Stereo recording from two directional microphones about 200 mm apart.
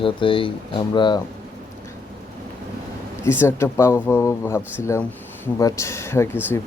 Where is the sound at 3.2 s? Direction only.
10° left (ahead or behind).